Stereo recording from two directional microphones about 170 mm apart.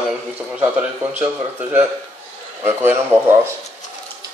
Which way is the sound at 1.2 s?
10° right (ahead or behind).